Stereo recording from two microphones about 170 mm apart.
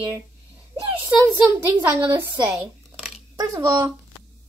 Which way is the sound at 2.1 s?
5° right (ahead or behind).